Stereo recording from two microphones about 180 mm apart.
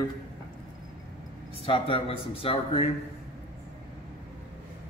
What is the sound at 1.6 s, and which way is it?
Speech, 30° left (ahead or behind).